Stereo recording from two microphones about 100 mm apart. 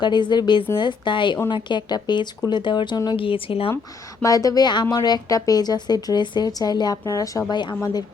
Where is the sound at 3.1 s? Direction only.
60° left (ahead or behind).